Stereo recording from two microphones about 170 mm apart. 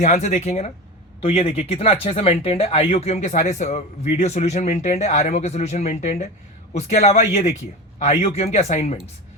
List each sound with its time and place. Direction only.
0.0 s speech: 45° left (ahead or behind)